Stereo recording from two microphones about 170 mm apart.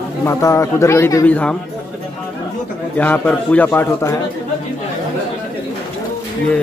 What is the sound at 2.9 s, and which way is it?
Speech, 10° left (ahead or behind).